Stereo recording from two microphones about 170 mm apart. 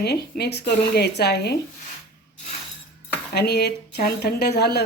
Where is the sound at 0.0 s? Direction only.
75° left (ahead or behind).